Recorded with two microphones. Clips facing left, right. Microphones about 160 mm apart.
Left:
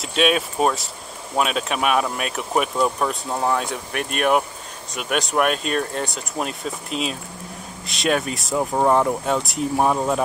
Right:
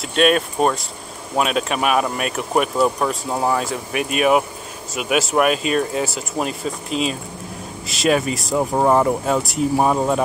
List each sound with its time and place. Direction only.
0.0 s speech: centre (ahead or behind)